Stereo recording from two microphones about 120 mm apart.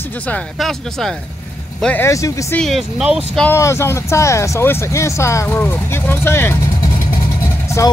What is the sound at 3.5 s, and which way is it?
Speech, 20° left (ahead or behind).